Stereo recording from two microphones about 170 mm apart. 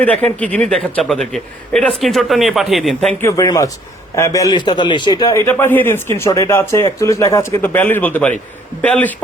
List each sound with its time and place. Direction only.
0.0 s a man's voice: 10° left (ahead or behind)
3.2 s a man's voice: 15° left (ahead or behind)